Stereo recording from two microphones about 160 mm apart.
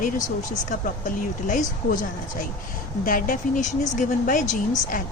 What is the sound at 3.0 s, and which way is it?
Speech, 60° left (ahead or behind).